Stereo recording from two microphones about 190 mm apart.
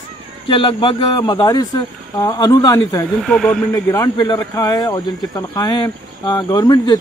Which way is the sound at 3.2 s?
Centre (ahead or behind).